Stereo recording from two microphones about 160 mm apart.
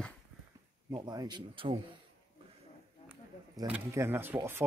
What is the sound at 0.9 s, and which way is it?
Speech, 25° right (ahead or behind).